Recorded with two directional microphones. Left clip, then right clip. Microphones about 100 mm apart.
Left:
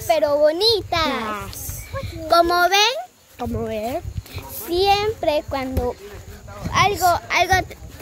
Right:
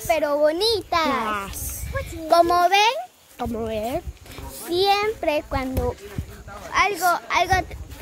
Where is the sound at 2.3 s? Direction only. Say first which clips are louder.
Left 1 dB; 25° left (ahead or behind).